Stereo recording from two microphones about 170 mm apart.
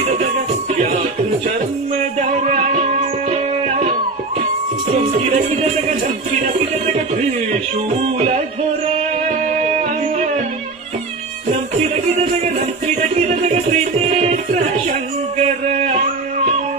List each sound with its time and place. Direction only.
2.4 s music: 40° right (ahead or behind)
6.4 s music: 45° right (ahead or behind)
9.6 s music: 45° right (ahead or behind)
12.2 s music: 40° right (ahead or behind)
15.4 s a sound: 40° right (ahead or behind)